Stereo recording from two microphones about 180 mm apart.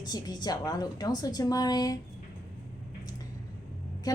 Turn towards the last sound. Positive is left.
turn(degrees=20)  # may be behind; listen again after turning